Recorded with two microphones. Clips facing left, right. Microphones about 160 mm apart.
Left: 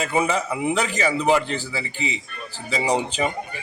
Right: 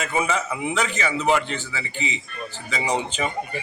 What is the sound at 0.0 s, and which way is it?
A man's voice, 30° left (ahead or behind).